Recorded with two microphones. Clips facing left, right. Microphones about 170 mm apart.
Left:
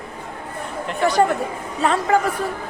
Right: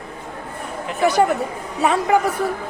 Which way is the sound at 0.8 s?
5° right (ahead or behind).